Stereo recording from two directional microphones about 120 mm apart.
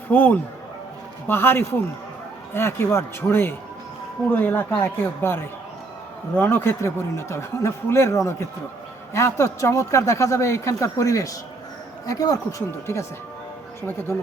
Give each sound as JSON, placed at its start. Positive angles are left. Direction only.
{"t": 0.1, "sound": "speech", "side_deg": 15}